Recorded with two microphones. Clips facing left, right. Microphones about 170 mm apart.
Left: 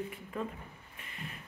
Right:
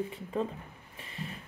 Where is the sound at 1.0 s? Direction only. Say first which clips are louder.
Right 5 dB; 30° right (ahead or behind).